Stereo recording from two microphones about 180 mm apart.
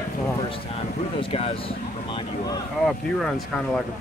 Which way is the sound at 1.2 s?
30° left (ahead or behind).